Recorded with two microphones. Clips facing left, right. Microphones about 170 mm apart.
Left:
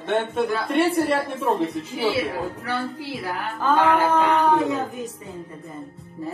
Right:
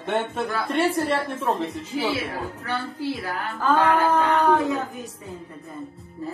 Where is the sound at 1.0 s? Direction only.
10° left (ahead or behind).